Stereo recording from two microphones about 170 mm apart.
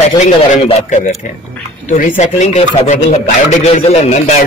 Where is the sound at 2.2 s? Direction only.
45° left (ahead or behind).